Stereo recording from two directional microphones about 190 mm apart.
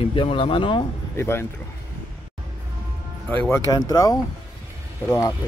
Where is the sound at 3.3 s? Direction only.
15° left (ahead or behind).